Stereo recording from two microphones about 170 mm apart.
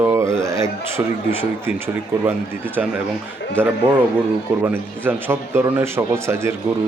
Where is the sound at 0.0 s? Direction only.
15° right (ahead or behind).